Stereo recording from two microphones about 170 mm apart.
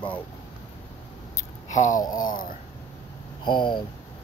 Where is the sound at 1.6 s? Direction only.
45° left (ahead or behind).